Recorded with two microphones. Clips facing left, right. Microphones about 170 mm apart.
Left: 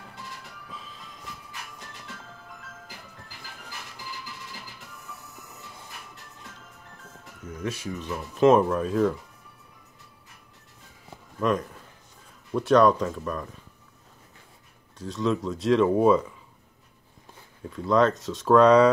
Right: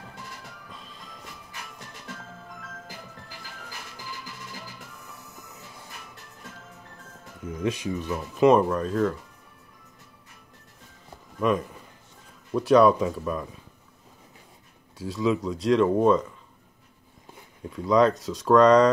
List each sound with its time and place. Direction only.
0.7 s music: centre (ahead or behind)
7.4 s speech: 15° right (ahead or behind)
8.4 s speech: centre (ahead or behind)
11.3 s speech: centre (ahead or behind)
15.0 s speech: 5° right (ahead or behind)
17.6 s speech: centre (ahead or behind)